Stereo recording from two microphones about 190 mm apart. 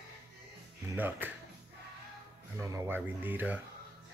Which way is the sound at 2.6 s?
15° right (ahead or behind).